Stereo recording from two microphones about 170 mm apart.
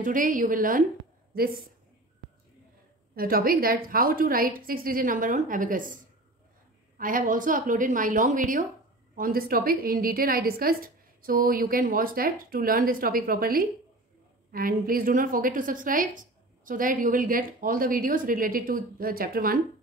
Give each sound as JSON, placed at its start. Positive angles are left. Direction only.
{"t": 0.0, "sound": "a woman's voice", "side_deg": -50}
{"t": 3.2, "sound": "a woman's voice", "side_deg": -60}
{"t": 7.0, "sound": "a woman's voice", "side_deg": -55}